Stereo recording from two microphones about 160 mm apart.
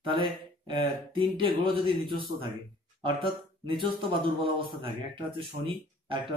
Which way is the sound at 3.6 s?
30° right (ahead or behind).